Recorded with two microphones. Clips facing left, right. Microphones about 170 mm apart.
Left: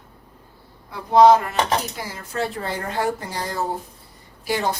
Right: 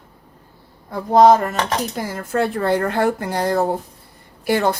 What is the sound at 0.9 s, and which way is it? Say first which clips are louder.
Speech: right 1 dB; 45° right (ahead or behind).